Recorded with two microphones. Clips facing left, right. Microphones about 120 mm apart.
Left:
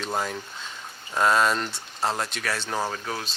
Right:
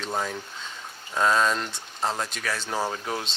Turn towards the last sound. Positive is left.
turn(degrees=-25)  # may be behind; listen again after turning